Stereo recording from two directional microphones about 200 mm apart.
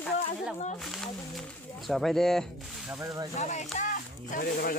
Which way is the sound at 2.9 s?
15° right (ahead or behind).